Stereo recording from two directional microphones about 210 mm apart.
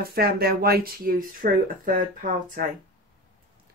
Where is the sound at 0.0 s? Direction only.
45° right (ahead or behind).